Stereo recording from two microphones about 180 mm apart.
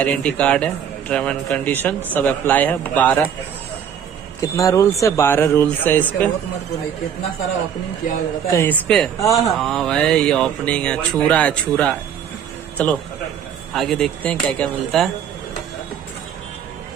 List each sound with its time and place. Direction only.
0.0 s a man's voice: 10° left (ahead or behind)
4.4 s a man's voice: 20° left (ahead or behind)
8.5 s speech: 10° left (ahead or behind)
13.7 s speech: 5° left (ahead or behind)